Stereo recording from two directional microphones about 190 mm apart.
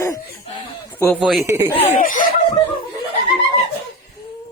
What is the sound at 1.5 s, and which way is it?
Speech, 15° right (ahead or behind).